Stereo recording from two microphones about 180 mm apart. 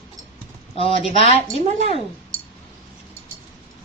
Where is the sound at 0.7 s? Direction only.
35° left (ahead or behind).